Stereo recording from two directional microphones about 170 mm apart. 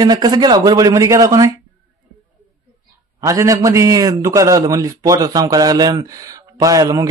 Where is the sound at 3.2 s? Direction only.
20° right (ahead or behind).